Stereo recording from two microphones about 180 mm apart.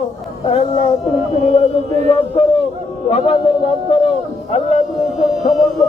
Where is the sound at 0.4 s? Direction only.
35° left (ahead or behind).